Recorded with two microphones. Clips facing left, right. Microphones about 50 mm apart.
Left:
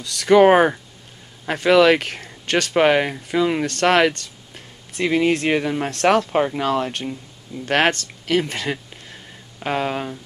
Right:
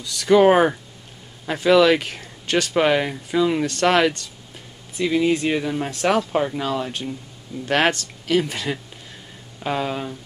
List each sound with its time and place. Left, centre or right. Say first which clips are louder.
0.0 s speech: left 2 dB; left
2.7 s speech: left 3 dB; left
3.6 s speech: left 1 dB; left
4.9 s speech: left 1 dB; left
5.6 s speech: left 2 dB; left
5.9 s speech: left 4 dB; left
6.3 s speech: left 2 dB; left
6.6 s speech: left 3 dB; left
7.6 s speech: left 1 dB; left